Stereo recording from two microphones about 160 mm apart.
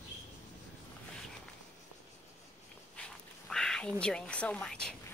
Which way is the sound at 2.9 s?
5° left (ahead or behind).